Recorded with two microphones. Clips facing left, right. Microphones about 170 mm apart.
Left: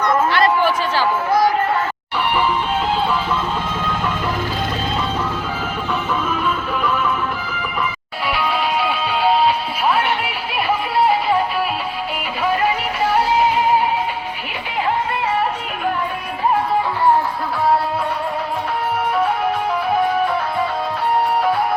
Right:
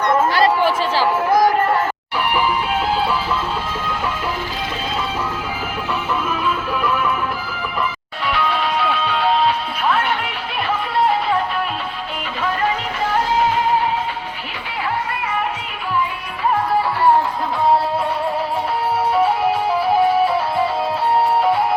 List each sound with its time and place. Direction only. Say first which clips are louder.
0.3 s a sound: even; 35° right (ahead or behind)
6.8 s music: even; 5° right (ahead or behind)
8.3 s music: even; 5° left (ahead or behind)